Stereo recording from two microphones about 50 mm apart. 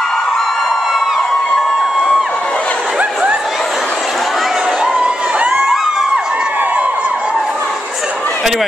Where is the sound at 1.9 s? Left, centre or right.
Centre.